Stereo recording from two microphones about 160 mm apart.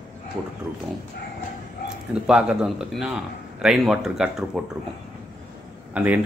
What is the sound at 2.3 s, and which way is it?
Speech, 5° right (ahead or behind).